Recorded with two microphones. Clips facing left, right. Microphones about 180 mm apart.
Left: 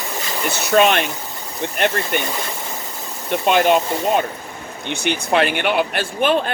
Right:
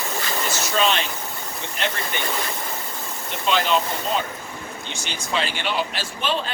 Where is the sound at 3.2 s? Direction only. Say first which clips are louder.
Left 7 dB; 55° left (ahead or behind).